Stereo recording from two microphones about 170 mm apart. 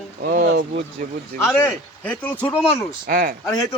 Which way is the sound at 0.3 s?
50° right (ahead or behind).